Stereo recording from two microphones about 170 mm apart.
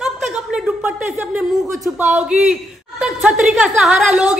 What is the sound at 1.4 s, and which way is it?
A woman's voice, centre (ahead or behind).